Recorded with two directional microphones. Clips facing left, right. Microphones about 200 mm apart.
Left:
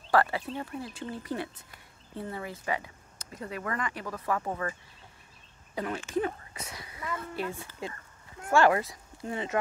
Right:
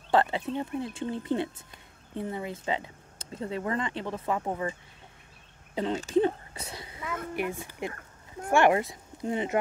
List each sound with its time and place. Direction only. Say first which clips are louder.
0.1 s speech: right 1 dB; 20° right (ahead or behind)
5.8 s speech: right 5 dB; 25° right (ahead or behind)